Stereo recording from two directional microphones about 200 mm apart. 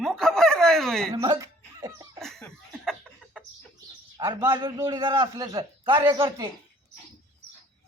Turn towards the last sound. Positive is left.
turn(degrees=-20)  # may be behind; listen again after turning